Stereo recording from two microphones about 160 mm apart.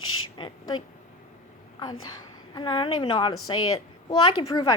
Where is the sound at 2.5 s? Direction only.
30° left (ahead or behind).